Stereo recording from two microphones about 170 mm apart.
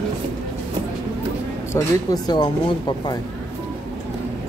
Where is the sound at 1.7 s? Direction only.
20° left (ahead or behind).